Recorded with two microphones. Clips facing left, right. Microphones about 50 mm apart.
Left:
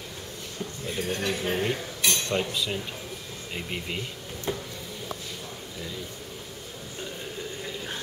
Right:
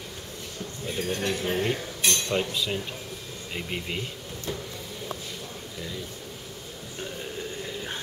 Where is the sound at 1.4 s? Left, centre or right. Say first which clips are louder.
Right 1 dB; centre.